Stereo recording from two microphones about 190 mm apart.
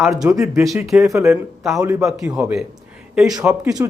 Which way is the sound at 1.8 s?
15° right (ahead or behind).